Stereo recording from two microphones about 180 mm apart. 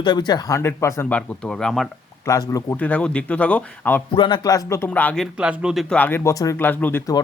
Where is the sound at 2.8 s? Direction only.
10° left (ahead or behind).